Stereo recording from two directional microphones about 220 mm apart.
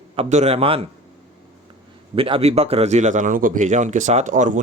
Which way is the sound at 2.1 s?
25° right (ahead or behind).